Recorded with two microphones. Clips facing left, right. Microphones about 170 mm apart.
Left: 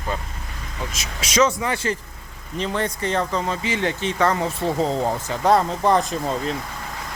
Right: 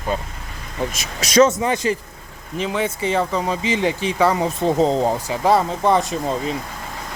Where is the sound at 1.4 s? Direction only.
20° right (ahead or behind).